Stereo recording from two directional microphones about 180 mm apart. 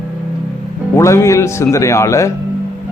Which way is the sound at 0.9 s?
15° left (ahead or behind).